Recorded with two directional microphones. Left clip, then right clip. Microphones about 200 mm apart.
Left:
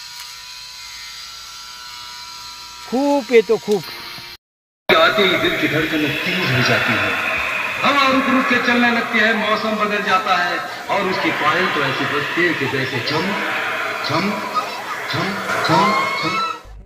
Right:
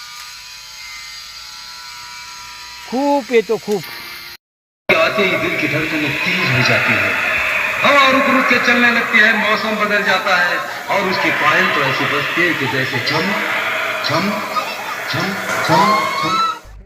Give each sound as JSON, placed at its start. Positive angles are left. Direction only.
{"t": 2.9, "sound": "speech", "side_deg": 5}
{"t": 4.9, "sound": "speech", "side_deg": -50}